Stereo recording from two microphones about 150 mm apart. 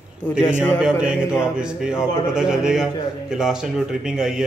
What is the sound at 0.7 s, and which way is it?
A man's voice, 5° right (ahead or behind).